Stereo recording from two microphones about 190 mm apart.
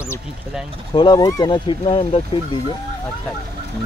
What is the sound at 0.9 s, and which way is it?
Speech, 20° left (ahead or behind).